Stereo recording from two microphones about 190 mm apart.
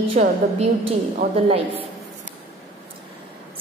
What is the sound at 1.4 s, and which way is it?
Speech, 30° right (ahead or behind).